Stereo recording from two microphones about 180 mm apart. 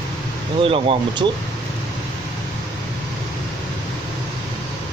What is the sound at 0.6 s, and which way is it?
Speech, 30° right (ahead or behind).